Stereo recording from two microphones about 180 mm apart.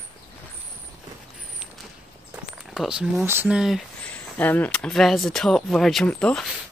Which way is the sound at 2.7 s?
5° right (ahead or behind).